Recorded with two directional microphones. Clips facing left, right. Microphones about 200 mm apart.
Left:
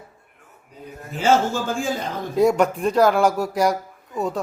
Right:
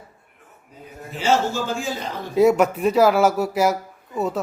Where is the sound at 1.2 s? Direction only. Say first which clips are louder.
Left 2 dB; 50° left (ahead or behind).